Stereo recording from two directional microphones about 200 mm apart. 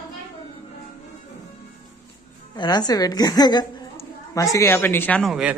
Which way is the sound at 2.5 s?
20° left (ahead or behind).